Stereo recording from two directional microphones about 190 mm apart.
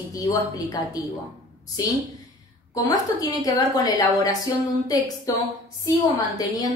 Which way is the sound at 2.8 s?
20° left (ahead or behind).